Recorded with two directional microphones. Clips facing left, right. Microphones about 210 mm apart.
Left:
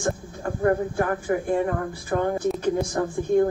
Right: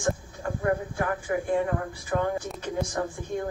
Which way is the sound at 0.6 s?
40° left (ahead or behind).